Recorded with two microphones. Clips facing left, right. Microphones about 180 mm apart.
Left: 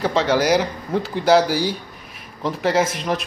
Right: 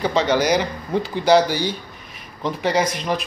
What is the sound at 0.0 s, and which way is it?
Speech, centre (ahead or behind).